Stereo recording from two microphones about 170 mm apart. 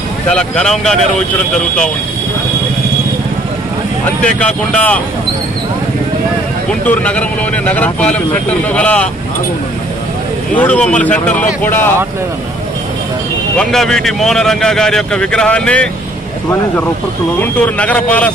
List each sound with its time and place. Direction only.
0.3 s speech: 5° left (ahead or behind)
4.0 s speech: 5° left (ahead or behind)
6.7 s speech: 10° left (ahead or behind)
10.5 s speech: 10° left (ahead or behind)
13.6 s speech: 5° left (ahead or behind)
17.4 s speech: 10° left (ahead or behind)